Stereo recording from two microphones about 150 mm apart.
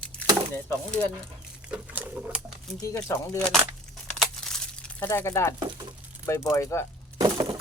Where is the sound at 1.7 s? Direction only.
10° right (ahead or behind).